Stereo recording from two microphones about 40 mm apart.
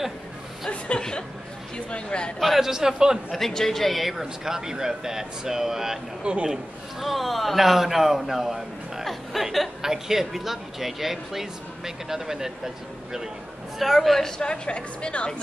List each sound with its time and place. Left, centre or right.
0.7 s chuckle: left
1.9 s speech: left
2.4 s a man's voice: centre
2.7 s speech: centre
3.3 s a man's voice: centre
4.2 s speech: centre
6.2 s a man's voice: right
7.0 s a man's voice: centre
9.8 s speech: centre
13.7 s a man's voice: centre
14.4 s speech: left